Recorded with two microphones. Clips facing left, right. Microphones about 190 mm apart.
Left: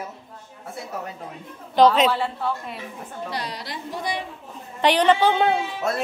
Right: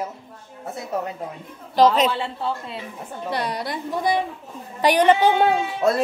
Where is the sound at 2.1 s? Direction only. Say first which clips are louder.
Left 1 dB; 25° right (ahead or behind).